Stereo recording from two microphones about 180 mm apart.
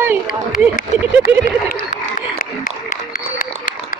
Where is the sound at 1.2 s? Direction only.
50° left (ahead or behind).